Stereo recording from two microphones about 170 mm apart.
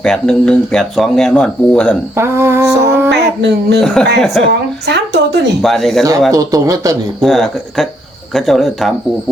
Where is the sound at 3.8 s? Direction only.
5° left (ahead or behind).